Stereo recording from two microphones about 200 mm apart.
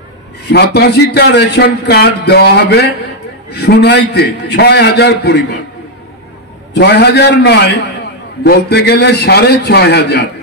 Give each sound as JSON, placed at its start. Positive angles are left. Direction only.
{"t": 0.5, "sound": "a man's voice", "side_deg": 55}
{"t": 6.7, "sound": "a man's voice", "side_deg": 55}